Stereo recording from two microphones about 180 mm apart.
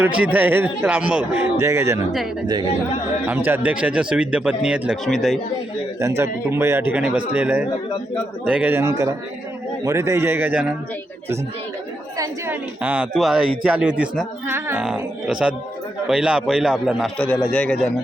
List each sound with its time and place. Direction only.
0.0 s a man's voice: 10° right (ahead or behind)
3.2 s a man's voice: 10° right (ahead or behind)
6.0 s a man's voice: 15° right (ahead or behind)
12.1 s speech: 20° right (ahead or behind)
12.8 s a man's voice: 5° right (ahead or behind)